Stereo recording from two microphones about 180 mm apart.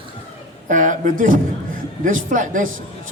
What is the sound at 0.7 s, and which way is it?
A man's voice, 45° right (ahead or behind).